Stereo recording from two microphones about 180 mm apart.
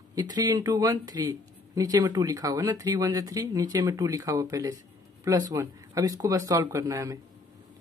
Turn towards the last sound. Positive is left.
turn(degrees=-20)  # may be behind; listen again after turning